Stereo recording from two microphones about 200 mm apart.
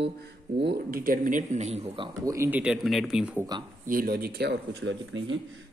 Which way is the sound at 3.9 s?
45° right (ahead or behind).